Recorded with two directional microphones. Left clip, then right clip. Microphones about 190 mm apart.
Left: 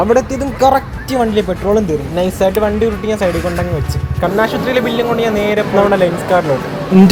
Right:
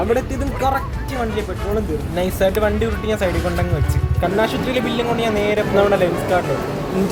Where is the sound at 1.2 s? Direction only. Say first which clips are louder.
Left 9 dB; 30° left (ahead or behind).